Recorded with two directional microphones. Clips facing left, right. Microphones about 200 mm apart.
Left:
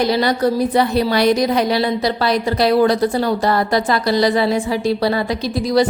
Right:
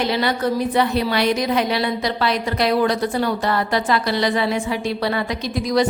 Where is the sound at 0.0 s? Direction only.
40° left (ahead or behind).